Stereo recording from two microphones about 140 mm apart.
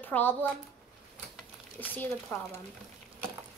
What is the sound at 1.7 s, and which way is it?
Speech, 10° left (ahead or behind).